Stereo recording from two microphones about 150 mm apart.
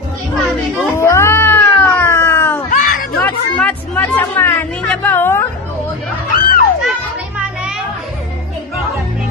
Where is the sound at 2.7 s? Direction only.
60° left (ahead or behind).